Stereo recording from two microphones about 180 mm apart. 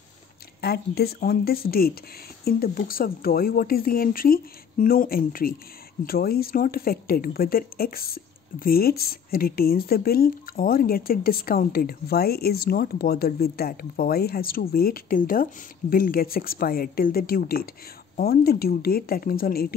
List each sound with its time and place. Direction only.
0.6 s speech: 60° left (ahead or behind)